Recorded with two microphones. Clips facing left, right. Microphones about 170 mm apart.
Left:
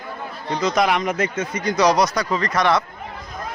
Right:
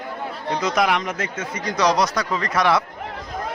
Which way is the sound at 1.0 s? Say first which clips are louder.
Left 5 dB; 15° left (ahead or behind).